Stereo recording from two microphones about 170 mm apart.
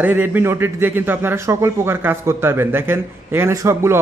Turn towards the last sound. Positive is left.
turn(degrees=-15)  # may be behind; listen again after turning